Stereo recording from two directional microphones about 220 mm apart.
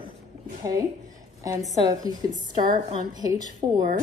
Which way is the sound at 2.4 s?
20° right (ahead or behind).